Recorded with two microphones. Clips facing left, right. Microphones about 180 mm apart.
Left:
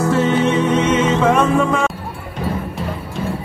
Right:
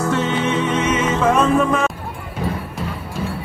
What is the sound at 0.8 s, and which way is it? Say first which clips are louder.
Music: left 3 dB; 10° right (ahead or behind).